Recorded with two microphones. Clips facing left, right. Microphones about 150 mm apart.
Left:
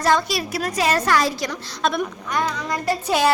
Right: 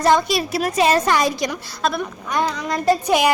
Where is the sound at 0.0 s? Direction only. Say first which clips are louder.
Right 3 dB; 20° right (ahead or behind).